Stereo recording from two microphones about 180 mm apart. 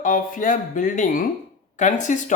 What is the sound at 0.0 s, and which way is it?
Speech, 50° left (ahead or behind).